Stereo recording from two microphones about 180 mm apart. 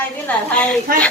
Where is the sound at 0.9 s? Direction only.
50° right (ahead or behind).